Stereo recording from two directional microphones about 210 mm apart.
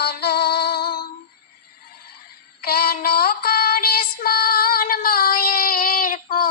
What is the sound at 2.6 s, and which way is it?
Child singing, 45° left (ahead or behind).